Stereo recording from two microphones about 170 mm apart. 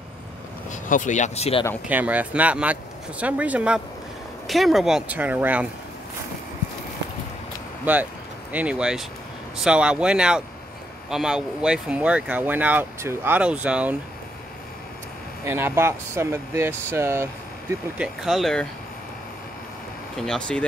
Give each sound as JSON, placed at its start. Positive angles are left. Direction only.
{"t": 0.7, "sound": "speech", "side_deg": 50}
{"t": 1.9, "sound": "speech", "side_deg": -10}
{"t": 7.8, "sound": "speech", "side_deg": -10}
{"t": 15.4, "sound": "speech", "side_deg": -15}
{"t": 18.0, "sound": "speech", "side_deg": 0}
{"t": 20.2, "sound": "speech", "side_deg": 5}